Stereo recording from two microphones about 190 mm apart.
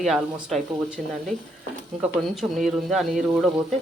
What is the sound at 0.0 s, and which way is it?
Speech, centre (ahead or behind).